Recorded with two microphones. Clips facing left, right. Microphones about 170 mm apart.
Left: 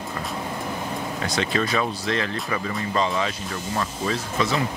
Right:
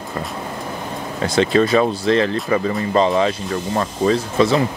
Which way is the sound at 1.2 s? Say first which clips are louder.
Right 10 dB; 30° right (ahead or behind).